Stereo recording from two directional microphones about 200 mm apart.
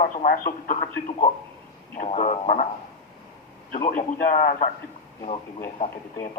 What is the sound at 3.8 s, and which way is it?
Speech, 45° left (ahead or behind).